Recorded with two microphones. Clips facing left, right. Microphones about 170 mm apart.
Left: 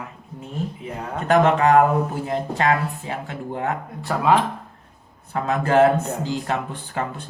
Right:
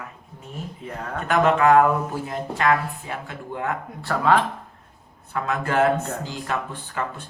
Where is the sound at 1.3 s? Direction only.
35° left (ahead or behind).